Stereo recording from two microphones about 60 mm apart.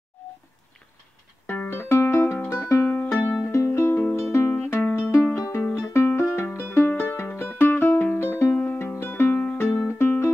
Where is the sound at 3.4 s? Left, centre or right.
Left.